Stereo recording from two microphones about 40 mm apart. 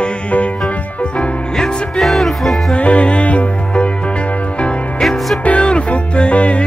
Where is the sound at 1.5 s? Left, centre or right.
Centre.